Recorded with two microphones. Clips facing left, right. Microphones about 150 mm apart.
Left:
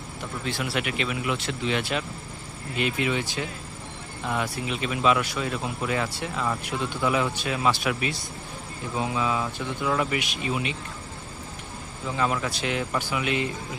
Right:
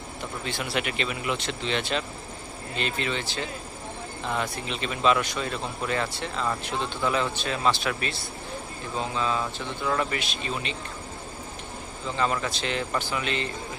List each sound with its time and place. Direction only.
0.4 s speech: centre (ahead or behind)
12.0 s speech: 5° left (ahead or behind)